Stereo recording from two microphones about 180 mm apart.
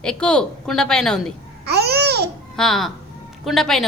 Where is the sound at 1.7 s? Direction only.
65° right (ahead or behind).